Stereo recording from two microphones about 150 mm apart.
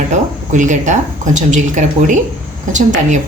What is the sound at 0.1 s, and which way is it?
Speech, 55° right (ahead or behind).